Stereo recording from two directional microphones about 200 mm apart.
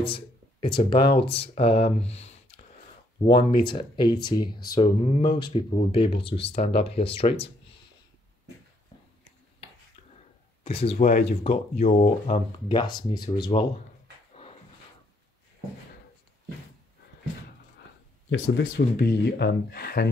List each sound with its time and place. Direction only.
0.0 s speech: 25° left (ahead or behind)
10.6 s speech: 30° left (ahead or behind)
18.9 s speech: 55° left (ahead or behind)